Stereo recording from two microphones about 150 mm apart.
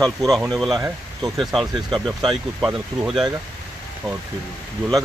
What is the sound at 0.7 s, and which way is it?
Speech, 25° right (ahead or behind).